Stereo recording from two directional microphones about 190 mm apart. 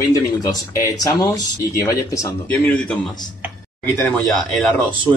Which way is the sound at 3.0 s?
20° left (ahead or behind).